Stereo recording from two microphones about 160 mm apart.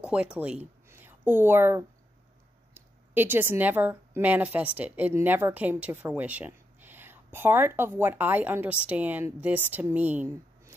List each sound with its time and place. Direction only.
0.0 s a woman's voice: 5° right (ahead or behind)